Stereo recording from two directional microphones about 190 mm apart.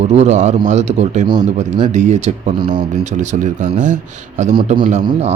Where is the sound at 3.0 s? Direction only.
40° right (ahead or behind).